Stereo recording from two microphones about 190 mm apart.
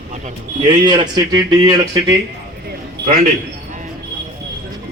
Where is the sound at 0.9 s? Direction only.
20° right (ahead or behind).